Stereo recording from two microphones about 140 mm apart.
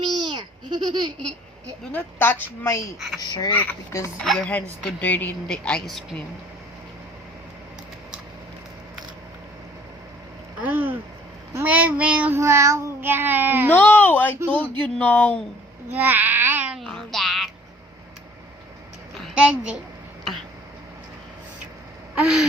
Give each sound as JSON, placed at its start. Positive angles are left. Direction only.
{"t": 0.2, "sound": "goat", "side_deg": -30}
{"t": 1.9, "sound": "a woman's voice", "side_deg": 15}
{"t": 3.2, "sound": "speech", "side_deg": 25}
{"t": 3.5, "sound": "a woman's voice", "side_deg": 10}
{"t": 10.6, "sound": "speech", "side_deg": -15}
{"t": 12.4, "sound": "speech", "side_deg": -20}
{"t": 13.7, "sound": "a woman's voice", "side_deg": 15}
{"t": 15.9, "sound": "babbling", "side_deg": -15}
{"t": 16.8, "sound": "music", "side_deg": 5}
{"t": 19.1, "sound": "a sound", "side_deg": -5}
{"t": 22.1, "sound": "gasp", "side_deg": -5}